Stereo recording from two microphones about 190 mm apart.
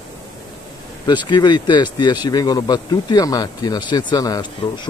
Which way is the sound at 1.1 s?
25° left (ahead or behind).